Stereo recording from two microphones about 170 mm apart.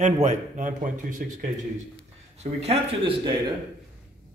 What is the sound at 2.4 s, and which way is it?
Speech, 40° right (ahead or behind).